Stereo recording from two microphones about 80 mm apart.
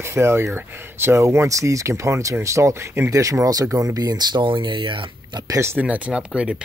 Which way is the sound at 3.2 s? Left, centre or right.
Right.